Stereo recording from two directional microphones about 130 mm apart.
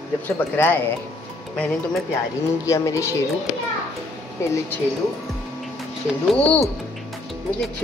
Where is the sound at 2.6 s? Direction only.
25° left (ahead or behind).